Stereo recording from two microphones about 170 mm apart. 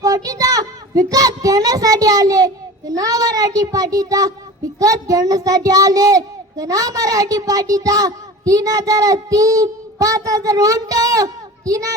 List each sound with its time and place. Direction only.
0.0 s a child's voice: 20° right (ahead or behind)